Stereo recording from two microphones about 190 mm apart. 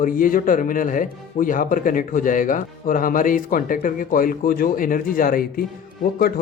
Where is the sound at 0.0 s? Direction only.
45° left (ahead or behind).